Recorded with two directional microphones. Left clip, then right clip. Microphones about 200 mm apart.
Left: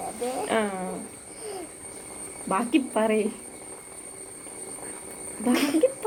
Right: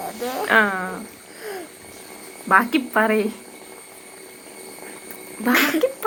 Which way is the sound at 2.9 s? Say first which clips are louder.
Right 7 dB; 30° right (ahead or behind).